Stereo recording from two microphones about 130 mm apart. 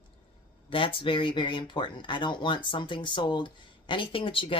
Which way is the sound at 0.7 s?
45° left (ahead or behind).